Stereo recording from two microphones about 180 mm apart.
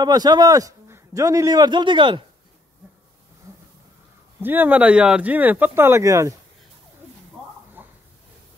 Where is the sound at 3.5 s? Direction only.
20° right (ahead or behind).